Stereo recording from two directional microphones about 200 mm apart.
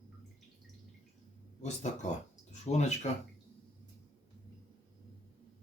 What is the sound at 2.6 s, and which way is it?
Speech, 35° left (ahead or behind).